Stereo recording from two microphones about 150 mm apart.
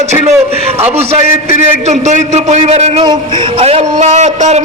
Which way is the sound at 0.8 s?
45° right (ahead or behind).